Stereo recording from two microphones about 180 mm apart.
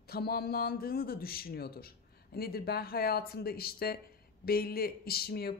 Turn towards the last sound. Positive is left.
turn(degrees=60)  # may be behind; listen again after turning